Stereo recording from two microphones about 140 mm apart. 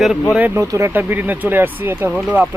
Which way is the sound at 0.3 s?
15° right (ahead or behind).